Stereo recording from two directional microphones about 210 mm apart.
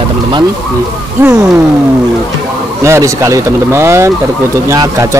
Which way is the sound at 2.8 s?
15° right (ahead or behind).